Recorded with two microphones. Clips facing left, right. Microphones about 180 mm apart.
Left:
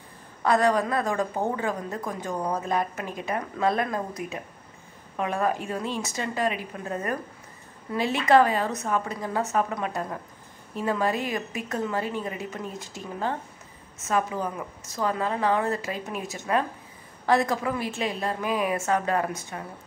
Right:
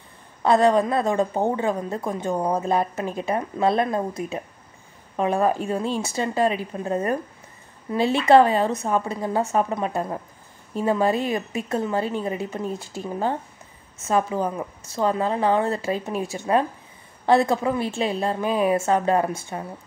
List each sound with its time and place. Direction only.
0.4 s a woman's voice: 25° right (ahead or behind)